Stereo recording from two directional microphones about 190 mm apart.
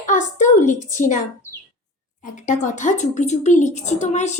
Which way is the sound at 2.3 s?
40° left (ahead or behind).